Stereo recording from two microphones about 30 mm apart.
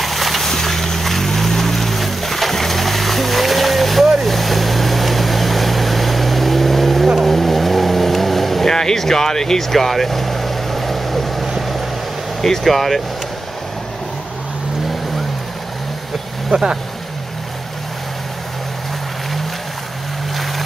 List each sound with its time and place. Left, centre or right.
0.0 s a sound: centre
0.4 s vehicle: centre
8.6 s vehicle: centre
12.4 s speech: centre
16.4 s speech: right